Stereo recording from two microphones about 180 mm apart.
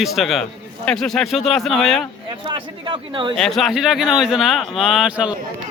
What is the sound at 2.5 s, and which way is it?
Speech, 25° right (ahead or behind).